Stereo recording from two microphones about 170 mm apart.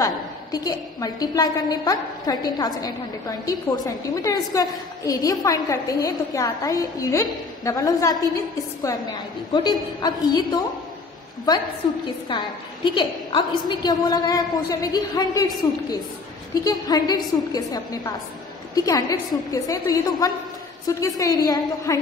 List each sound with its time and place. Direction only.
0.0 s a woman's voice: 20° left (ahead or behind)
9.5 s a woman's voice: 25° left (ahead or behind)
12.3 s a woman's voice: 25° left (ahead or behind)